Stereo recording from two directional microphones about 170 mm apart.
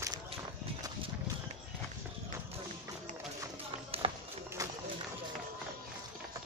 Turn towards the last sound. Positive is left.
turn(degrees=-20)  # may be behind; listen again after turning